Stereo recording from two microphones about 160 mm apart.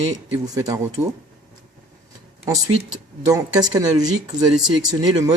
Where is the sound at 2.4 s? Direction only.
25° right (ahead or behind).